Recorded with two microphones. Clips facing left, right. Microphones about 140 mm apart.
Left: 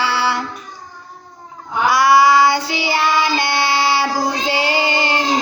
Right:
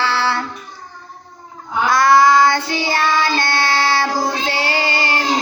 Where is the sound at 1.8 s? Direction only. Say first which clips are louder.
Even; 10° left (ahead or behind).